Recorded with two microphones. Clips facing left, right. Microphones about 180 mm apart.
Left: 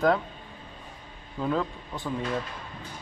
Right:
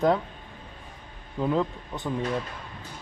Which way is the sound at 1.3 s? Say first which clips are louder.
Right 2 dB; 20° right (ahead or behind).